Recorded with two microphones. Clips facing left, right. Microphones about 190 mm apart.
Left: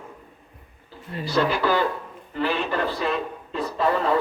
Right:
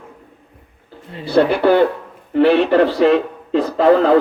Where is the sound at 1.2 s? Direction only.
60° right (ahead or behind).